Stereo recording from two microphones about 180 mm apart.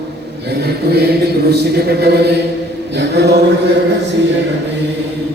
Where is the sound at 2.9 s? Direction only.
70° right (ahead or behind).